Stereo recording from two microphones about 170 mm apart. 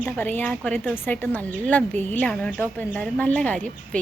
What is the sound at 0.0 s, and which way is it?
A woman's voice, 10° left (ahead or behind).